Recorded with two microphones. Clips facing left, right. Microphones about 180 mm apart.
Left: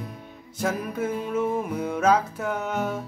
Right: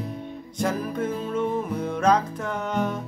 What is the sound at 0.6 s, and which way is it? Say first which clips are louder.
Music: right 1 dB; 5° left (ahead or behind).